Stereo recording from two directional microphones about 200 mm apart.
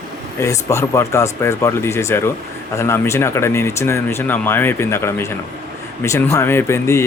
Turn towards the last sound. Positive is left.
turn(degrees=15)  # may be behind; listen again after turning